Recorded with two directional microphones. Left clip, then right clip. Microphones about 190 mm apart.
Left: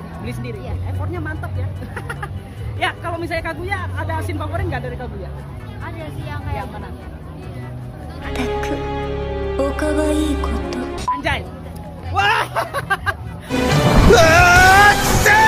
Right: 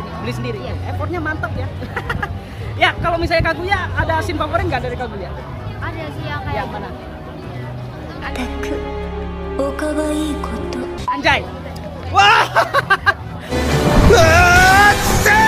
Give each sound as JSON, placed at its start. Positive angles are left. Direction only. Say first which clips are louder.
{"t": 0.2, "sound": "speech", "louder": "right 5 dB", "side_deg": -10}
{"t": 1.1, "sound": "music", "louder": "right 7 dB", "side_deg": -5}
{"t": 2.0, "sound": "speech", "louder": "right 7 dB", "side_deg": -5}
{"t": 6.2, "sound": "speech", "louder": "right 6 dB", "side_deg": 15}
{"t": 8.3, "sound": "music", "louder": "left 2 dB", "side_deg": 0}
{"t": 11.1, "sound": "speech", "louder": "right 6 dB", "side_deg": -10}
{"t": 13.9, "sound": "music", "louder": "even", "side_deg": 0}